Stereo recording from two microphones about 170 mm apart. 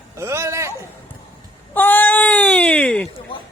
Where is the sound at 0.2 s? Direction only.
15° right (ahead or behind).